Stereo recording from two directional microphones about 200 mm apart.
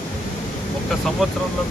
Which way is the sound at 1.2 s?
Centre (ahead or behind).